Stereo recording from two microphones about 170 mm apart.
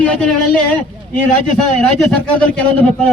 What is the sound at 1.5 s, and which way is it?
Speech, 5° left (ahead or behind).